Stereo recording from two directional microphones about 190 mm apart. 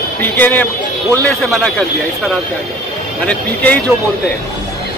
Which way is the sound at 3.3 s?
5° left (ahead or behind).